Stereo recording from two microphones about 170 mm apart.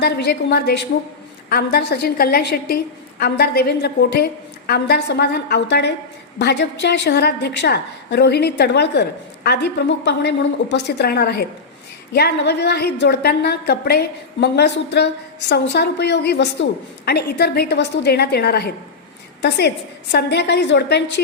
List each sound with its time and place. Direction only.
0.0 s a woman's voice: 70° left (ahead or behind)
1.5 s a woman's voice: 70° left (ahead or behind); by 16.6 s 90° left
17.1 s a woman's voice: 70° left (ahead or behind); by 21.2 s 90° left